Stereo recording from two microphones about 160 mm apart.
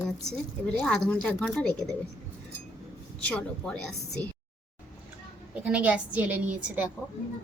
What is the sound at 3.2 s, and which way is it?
A woman's voice, 5° left (ahead or behind).